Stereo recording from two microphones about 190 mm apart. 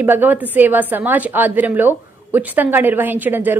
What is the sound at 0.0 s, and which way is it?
A woman's voice, 10° right (ahead or behind).